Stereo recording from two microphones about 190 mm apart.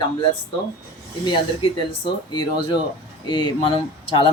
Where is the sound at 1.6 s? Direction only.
30° left (ahead or behind).